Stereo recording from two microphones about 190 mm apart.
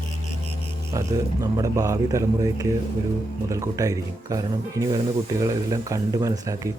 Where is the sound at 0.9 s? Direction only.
15° right (ahead or behind).